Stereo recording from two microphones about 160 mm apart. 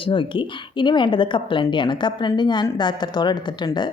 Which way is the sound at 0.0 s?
30° left (ahead or behind).